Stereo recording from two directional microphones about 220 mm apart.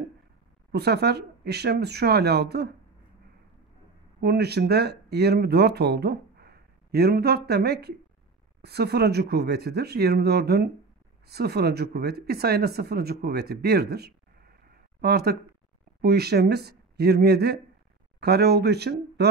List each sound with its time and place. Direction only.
0.7 s speech: 50° right (ahead or behind)
4.2 s speech: 45° right (ahead or behind)